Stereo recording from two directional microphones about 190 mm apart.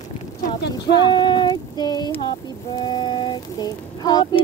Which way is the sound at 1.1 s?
25° left (ahead or behind).